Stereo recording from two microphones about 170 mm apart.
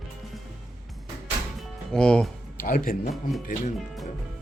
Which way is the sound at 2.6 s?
55° left (ahead or behind).